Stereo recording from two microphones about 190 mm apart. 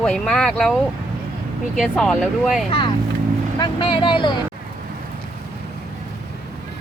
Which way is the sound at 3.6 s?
25° left (ahead or behind).